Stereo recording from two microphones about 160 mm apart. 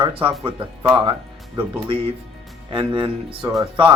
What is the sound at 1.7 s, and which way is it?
Speech, 35° right (ahead or behind).